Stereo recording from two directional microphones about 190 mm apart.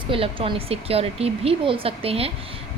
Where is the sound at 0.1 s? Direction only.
30° right (ahead or behind).